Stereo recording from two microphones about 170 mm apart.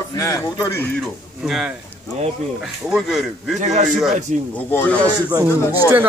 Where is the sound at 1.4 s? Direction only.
5° right (ahead or behind).